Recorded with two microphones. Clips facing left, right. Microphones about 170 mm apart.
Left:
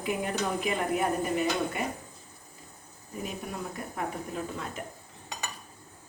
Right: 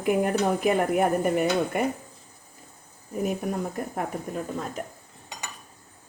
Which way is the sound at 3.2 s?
50° right (ahead or behind).